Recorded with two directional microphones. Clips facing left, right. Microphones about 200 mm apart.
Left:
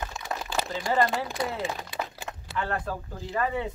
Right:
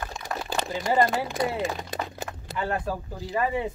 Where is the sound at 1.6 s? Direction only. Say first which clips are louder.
Right 3 dB; 40° right (ahead or behind).